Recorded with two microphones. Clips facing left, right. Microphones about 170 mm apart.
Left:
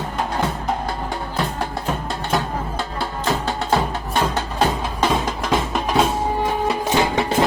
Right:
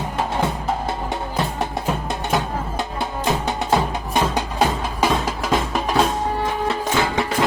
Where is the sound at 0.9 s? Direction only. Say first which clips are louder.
Right 1 dB; 20° right (ahead or behind).